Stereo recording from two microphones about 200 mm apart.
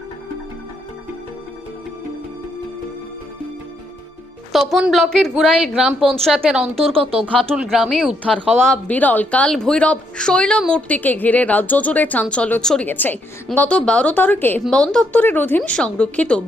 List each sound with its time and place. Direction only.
4.5 s speech: centre (ahead or behind)
6.8 s speech: 30° right (ahead or behind)
7.2 s speech: centre (ahead or behind)